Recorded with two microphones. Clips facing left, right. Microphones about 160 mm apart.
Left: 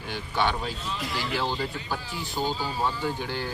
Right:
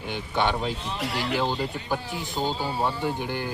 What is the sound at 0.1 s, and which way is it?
Speech, 20° right (ahead or behind).